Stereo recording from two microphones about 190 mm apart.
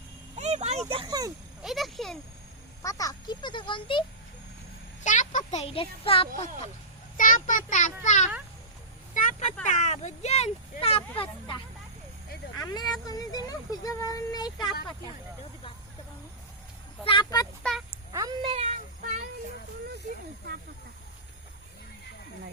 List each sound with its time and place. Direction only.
0.3 s a sound: 35° right (ahead or behind)
1.6 s speech: centre (ahead or behind)
2.8 s speech: 20° left (ahead or behind)
5.0 s speech: 40° left (ahead or behind)
7.2 s a child's voice: 45° left (ahead or behind)
9.1 s vehicle: 40° left (ahead or behind)
9.6 s speech: 40° left (ahead or behind); by 14.7 s 20° left (ahead or behind)
17.0 s speech: 25° left (ahead or behind)
17.6 s a sound: centre (ahead or behind)
17.9 s a sound: 20° right (ahead or behind)
18.5 s child singing: 35° right (ahead or behind)